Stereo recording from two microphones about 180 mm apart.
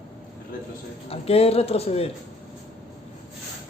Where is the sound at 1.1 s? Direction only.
35° left (ahead or behind).